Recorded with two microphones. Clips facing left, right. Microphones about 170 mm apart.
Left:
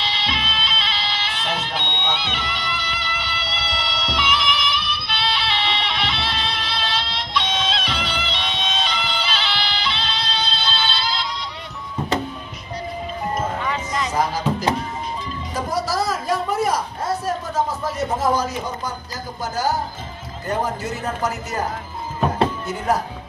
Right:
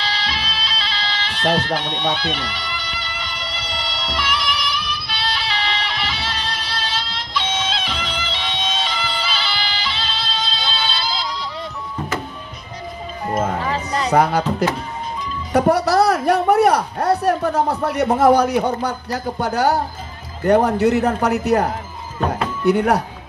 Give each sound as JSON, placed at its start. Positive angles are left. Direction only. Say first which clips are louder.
{"t": 0.0, "sound": "music", "louder": "right 1 dB", "side_deg": 0}
{"t": 13.6, "sound": "music", "louder": "right 3 dB", "side_deg": -35}
{"t": 14.1, "sound": "a man's voice", "louder": "right 8 dB", "side_deg": -65}
{"t": 15.5, "sound": "a man's voice", "louder": "right 9 dB", "side_deg": -65}
{"t": 22.7, "sound": "a man's voice", "louder": "right 6 dB", "side_deg": -65}